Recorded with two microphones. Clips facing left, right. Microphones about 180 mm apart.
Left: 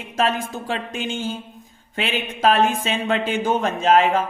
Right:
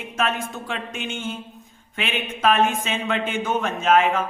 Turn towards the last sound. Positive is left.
turn(degrees=35)  # may be behind; listen again after turning